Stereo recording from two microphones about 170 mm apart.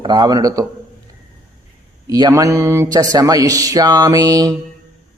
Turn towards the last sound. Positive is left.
turn(degrees=-20)  # may be behind; listen again after turning